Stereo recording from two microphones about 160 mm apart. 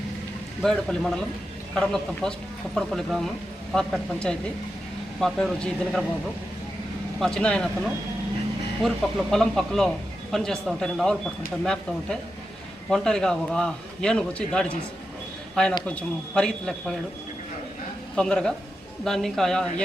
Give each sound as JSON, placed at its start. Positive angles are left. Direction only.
{"t": 0.6, "sound": "a man's voice", "side_deg": 5}
{"t": 7.2, "sound": "a man's voice", "side_deg": 5}
{"t": 8.8, "sound": "a man's voice", "side_deg": 0}
{"t": 18.2, "sound": "a man's voice", "side_deg": 5}